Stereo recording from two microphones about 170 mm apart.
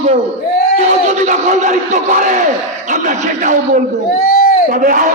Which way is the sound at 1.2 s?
45° right (ahead or behind).